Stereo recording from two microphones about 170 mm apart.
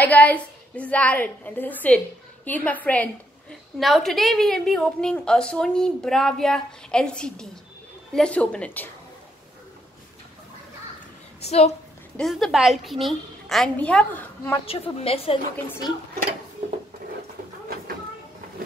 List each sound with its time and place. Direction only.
0.0 s a woman's voice: 10° left (ahead or behind)
11.4 s a woman's voice: 40° left (ahead or behind)
12.2 s a woman's voice: centre (ahead or behind)
14.7 s a woman's voice: 35° left (ahead or behind)